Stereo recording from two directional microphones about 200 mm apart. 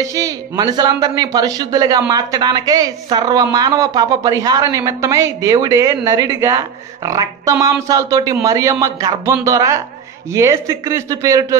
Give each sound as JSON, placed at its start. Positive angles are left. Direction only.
{"t": 0.0, "sound": "a woman's voice", "side_deg": -15}